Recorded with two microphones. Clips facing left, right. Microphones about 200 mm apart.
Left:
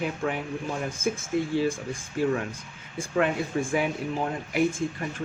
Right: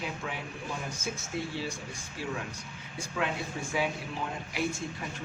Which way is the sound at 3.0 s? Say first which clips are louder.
Left 8 dB; 50° left (ahead or behind).